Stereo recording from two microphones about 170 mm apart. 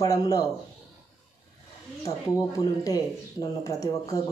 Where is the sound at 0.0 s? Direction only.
20° left (ahead or behind).